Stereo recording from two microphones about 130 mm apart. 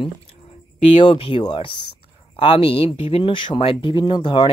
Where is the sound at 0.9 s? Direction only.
45° left (ahead or behind).